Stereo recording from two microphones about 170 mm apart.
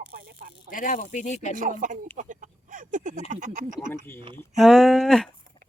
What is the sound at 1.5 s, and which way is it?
Speech, 50° right (ahead or behind).